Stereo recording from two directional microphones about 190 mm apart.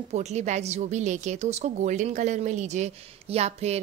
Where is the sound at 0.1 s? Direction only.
35° right (ahead or behind).